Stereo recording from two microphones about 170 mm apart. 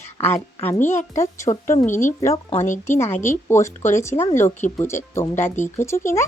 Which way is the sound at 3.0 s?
15° left (ahead or behind).